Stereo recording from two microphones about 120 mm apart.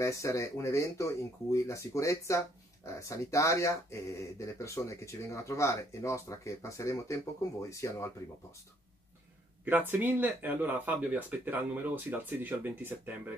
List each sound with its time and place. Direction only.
0.0 s speech: 25° left (ahead or behind)
9.7 s speech: 15° right (ahead or behind)